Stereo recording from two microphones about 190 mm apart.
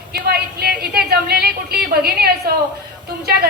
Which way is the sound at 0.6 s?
55° right (ahead or behind).